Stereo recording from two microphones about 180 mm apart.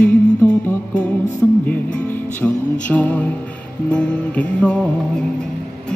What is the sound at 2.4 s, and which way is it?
Music, 10° left (ahead or behind).